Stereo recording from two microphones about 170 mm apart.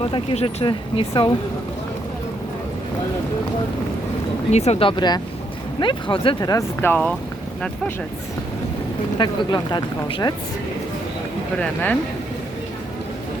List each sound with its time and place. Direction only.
0.0 s speech: 30° left (ahead or behind)
4.5 s speech: 40° left (ahead or behind); by 7.1 s 10° left (ahead or behind)
9.1 s speech: 25° left (ahead or behind)
11.6 s speech: 10° left (ahead or behind)